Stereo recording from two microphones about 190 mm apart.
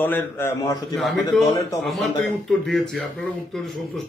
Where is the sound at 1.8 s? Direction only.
Centre (ahead or behind).